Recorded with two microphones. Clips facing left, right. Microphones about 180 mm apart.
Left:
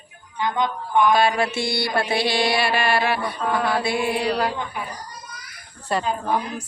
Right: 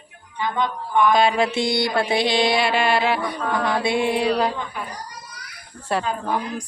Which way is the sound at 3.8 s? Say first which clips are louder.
Right 2 dB; 20° right (ahead or behind).